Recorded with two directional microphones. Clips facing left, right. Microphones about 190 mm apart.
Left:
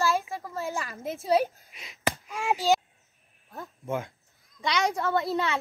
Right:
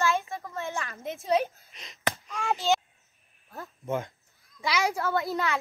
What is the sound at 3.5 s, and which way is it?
Speech, centre (ahead or behind).